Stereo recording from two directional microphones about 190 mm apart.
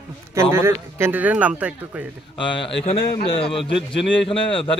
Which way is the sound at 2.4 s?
25° left (ahead or behind).